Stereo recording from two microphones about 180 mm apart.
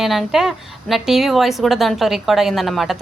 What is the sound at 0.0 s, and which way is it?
Speech, centre (ahead or behind).